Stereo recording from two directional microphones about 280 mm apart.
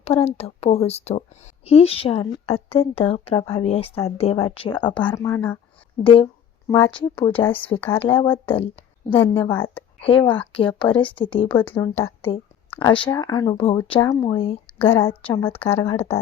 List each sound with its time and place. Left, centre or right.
0.0 s a woman's voice: left
6.0 s speech: centre
10.0 s speech: centre
10.2 s speech: centre
12.3 s speech: centre
14.8 s speech: centre
15.7 s a woman's voice: centre